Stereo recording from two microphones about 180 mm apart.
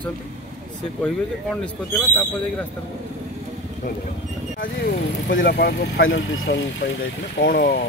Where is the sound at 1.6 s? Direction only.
5° left (ahead or behind).